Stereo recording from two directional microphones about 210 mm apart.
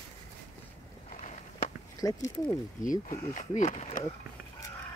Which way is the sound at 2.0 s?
15° left (ahead or behind).